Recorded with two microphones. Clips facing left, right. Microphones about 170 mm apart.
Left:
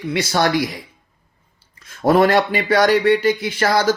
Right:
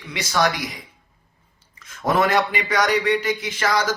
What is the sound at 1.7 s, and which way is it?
Speech, 30° left (ahead or behind).